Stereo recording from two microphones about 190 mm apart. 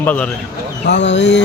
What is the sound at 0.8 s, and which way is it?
Speech, 65° left (ahead or behind).